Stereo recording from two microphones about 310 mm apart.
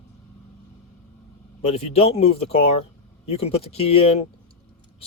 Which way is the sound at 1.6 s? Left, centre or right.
Centre.